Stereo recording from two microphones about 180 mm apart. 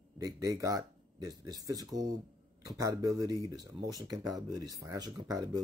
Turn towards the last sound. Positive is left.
turn(degrees=-20)  # may be behind; listen again after turning